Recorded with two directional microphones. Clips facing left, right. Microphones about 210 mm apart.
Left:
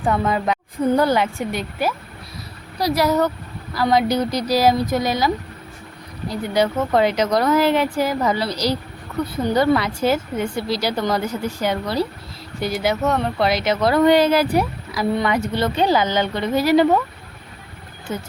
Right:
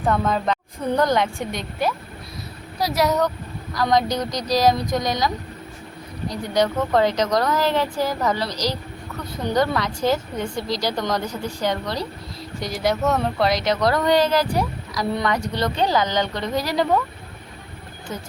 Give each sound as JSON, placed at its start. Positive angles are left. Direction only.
{"t": 0.0, "sound": "speech", "side_deg": 10}
{"t": 6.5, "sound": "speech", "side_deg": 5}
{"t": 18.1, "sound": "speech", "side_deg": 30}